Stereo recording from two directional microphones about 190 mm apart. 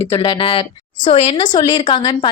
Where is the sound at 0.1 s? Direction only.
30° left (ahead or behind).